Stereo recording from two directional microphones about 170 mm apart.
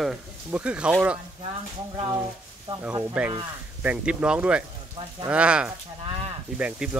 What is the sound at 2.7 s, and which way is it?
Speech, 25° right (ahead or behind).